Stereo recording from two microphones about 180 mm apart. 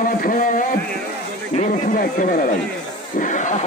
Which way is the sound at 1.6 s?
50° left (ahead or behind).